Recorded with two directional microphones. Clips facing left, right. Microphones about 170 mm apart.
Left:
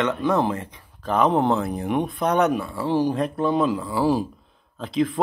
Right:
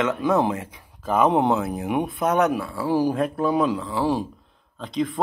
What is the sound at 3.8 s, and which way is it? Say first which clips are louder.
Speech: left 2 dB; 5° left (ahead or behind).